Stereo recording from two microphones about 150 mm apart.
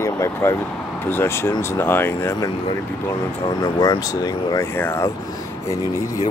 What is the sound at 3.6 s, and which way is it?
Speech, 25° left (ahead or behind).